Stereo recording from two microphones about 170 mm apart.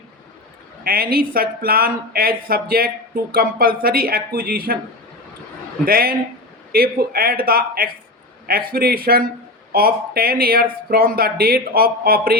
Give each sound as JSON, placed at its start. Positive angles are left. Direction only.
{"t": 0.9, "sound": "speech", "side_deg": -60}
{"t": 5.8, "sound": "speech", "side_deg": -60}